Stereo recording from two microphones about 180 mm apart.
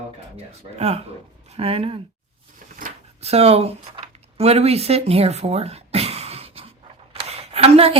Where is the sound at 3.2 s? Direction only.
35° right (ahead or behind).